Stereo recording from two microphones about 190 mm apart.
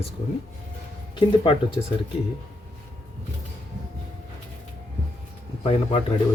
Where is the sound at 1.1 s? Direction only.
25° left (ahead or behind).